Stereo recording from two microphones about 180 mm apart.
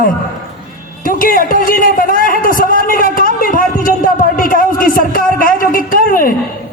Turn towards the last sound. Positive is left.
turn(degrees=50)  # may be behind; listen again after turning